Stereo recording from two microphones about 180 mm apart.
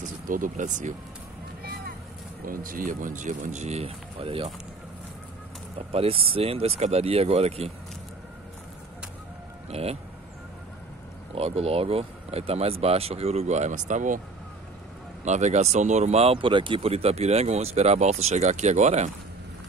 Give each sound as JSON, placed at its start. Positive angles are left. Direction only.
{"t": 0.0, "sound": "speech", "side_deg": -45}
{"t": 2.4, "sound": "speech", "side_deg": -50}
{"t": 5.8, "sound": "speech", "side_deg": -35}
{"t": 9.7, "sound": "speech", "side_deg": -35}
{"t": 11.3, "sound": "speech", "side_deg": -35}
{"t": 15.2, "sound": "speech", "side_deg": -40}